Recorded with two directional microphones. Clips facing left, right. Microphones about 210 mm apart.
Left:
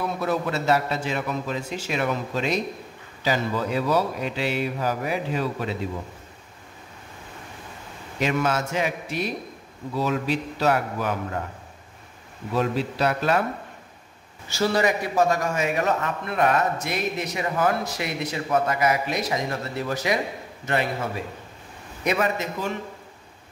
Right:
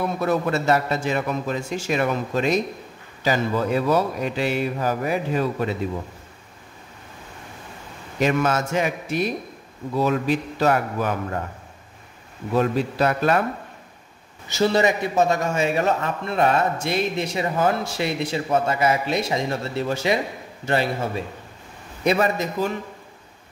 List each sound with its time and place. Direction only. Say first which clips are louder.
0.2 s a man's voice: right 4 dB; 50° right (ahead or behind)
8.2 s a man's voice: right 3 dB; 50° right (ahead or behind)
12.5 s a man's voice: right 3 dB; 50° right (ahead or behind)
14.5 s a man's voice: right 3 dB; 25° right (ahead or behind)